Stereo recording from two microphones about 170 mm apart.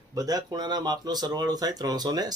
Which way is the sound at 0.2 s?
20° right (ahead or behind).